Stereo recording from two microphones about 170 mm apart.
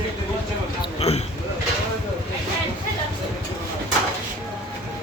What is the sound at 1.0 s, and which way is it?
Speech, 35° left (ahead or behind).